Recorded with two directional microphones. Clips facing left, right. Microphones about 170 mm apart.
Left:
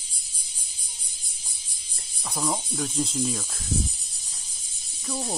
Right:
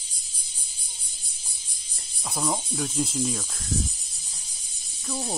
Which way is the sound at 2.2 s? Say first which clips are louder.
Even; 5° right (ahead or behind).